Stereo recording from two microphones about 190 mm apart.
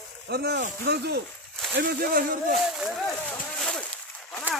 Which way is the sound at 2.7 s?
Centre (ahead or behind).